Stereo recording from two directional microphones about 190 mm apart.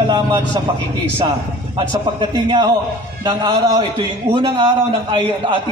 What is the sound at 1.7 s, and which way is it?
A man's voice, 25° right (ahead or behind).